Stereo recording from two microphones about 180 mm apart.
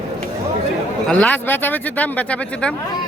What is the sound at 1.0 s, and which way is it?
Speech, 5° left (ahead or behind).